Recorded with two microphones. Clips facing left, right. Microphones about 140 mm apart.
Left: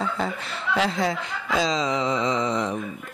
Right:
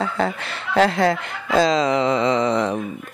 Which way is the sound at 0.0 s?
70° right (ahead or behind).